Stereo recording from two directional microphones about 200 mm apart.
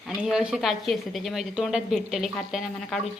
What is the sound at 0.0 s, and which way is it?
A woman's voice, centre (ahead or behind).